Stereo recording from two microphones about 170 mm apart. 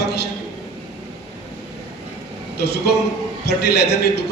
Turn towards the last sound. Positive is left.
turn(degrees=75)  # may be behind; listen again after turning